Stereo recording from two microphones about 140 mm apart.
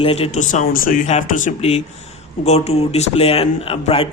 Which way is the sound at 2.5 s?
50° left (ahead or behind).